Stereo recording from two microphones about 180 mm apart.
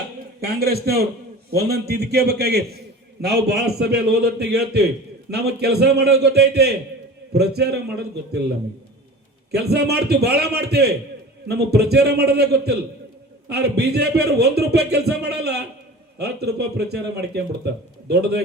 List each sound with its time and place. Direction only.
0.4 s a man's voice: 60° right (ahead or behind)
9.5 s a man's voice: 65° right (ahead or behind)